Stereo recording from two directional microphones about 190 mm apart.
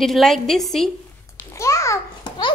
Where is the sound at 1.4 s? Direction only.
15° left (ahead or behind).